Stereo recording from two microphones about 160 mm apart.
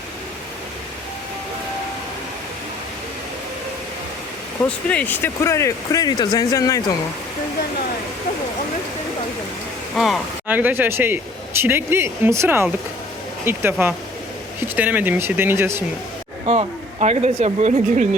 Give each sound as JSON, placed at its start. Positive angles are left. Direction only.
{"t": 4.9, "sound": "speech", "side_deg": 10}
{"t": 9.9, "sound": "speech", "side_deg": 0}
{"t": 16.5, "sound": "a woman's voice", "side_deg": -40}